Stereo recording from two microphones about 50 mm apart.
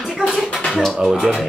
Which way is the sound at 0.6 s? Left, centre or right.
Centre.